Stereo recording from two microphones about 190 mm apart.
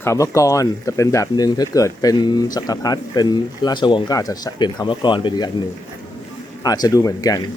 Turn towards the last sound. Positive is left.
turn(degrees=20)  # may be behind; listen again after turning